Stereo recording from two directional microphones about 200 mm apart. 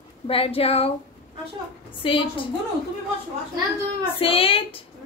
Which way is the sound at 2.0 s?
25° left (ahead or behind).